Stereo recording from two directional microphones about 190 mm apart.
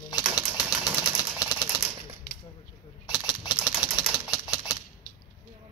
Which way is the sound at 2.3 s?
55° left (ahead or behind).